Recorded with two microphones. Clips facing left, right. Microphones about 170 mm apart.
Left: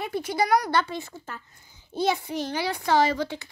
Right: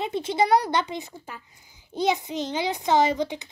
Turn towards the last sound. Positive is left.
turn(degrees=-20)  # may be behind; listen again after turning